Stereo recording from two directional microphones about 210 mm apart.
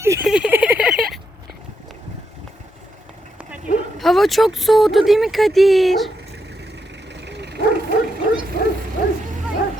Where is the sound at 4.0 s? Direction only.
Centre (ahead or behind).